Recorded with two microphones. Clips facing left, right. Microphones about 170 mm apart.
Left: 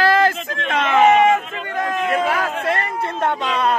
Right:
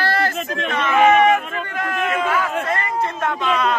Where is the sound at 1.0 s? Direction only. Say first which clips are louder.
Even; 20° left (ahead or behind).